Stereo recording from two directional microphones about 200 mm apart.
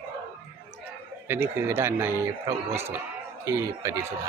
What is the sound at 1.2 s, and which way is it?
A man's voice, 10° right (ahead or behind).